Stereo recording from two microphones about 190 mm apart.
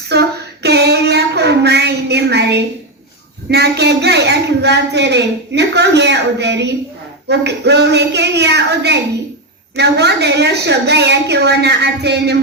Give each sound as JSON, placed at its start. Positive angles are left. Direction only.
{"t": 0.1, "sound": "child singing", "side_deg": -60}
{"t": 3.5, "sound": "speech", "side_deg": -60}